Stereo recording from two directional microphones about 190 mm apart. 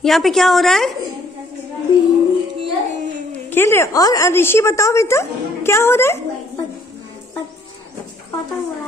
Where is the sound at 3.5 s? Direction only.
15° left (ahead or behind).